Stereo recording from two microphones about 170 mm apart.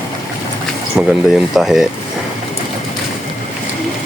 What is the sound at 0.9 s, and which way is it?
Speech, centre (ahead or behind).